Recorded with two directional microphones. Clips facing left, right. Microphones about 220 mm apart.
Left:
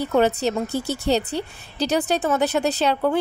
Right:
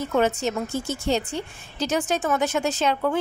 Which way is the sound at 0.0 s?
35° left (ahead or behind).